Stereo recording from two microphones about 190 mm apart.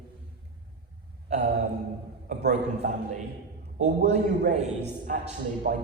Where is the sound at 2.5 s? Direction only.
40° right (ahead or behind).